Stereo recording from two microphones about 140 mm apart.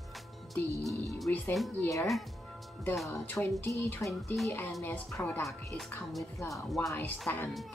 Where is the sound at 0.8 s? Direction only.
Centre (ahead or behind).